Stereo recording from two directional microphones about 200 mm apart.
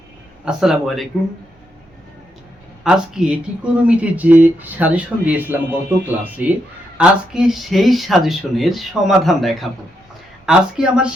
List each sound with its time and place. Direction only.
0.4 s speech: centre (ahead or behind)
2.8 s speech: 5° right (ahead or behind)